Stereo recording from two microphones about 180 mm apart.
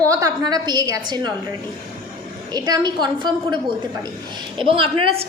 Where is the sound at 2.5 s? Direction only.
20° right (ahead or behind).